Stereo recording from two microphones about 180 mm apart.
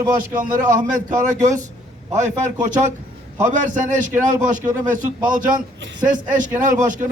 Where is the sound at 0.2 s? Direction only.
45° right (ahead or behind).